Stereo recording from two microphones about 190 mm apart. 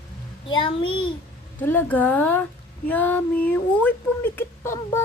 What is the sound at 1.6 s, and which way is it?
Speech, 10° left (ahead or behind).